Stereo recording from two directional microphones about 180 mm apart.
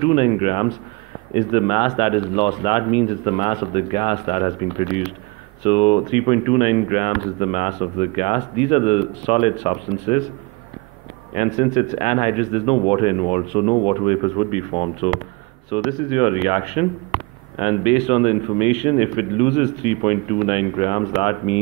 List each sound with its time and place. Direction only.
0.0 s speech: 30° left (ahead or behind)
11.3 s speech: 35° left (ahead or behind)